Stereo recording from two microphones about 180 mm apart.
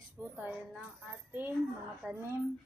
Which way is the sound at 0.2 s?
10° right (ahead or behind).